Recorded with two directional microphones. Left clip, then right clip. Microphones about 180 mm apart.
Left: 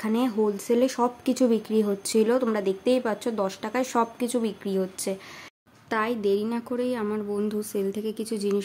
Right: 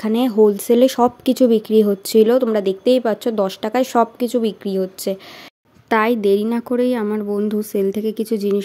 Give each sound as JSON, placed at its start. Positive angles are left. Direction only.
{"t": 0.0, "sound": "speech", "side_deg": -30}
{"t": 5.9, "sound": "a woman's voice", "side_deg": -45}